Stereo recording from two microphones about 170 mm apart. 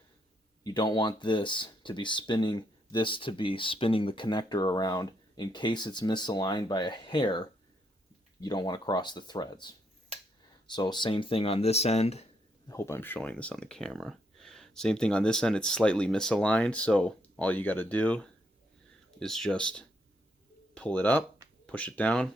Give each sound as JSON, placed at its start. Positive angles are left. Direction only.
{"t": 0.6, "sound": "speech", "side_deg": 25}
{"t": 12.6, "sound": "speech", "side_deg": 15}